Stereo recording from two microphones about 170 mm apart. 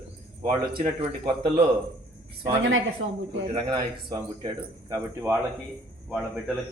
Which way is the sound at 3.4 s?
25° right (ahead or behind).